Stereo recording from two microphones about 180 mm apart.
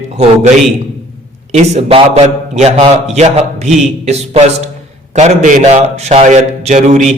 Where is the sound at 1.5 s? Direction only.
40° right (ahead or behind).